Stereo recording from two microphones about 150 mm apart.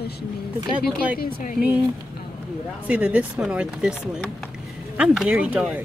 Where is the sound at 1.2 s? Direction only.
80° left.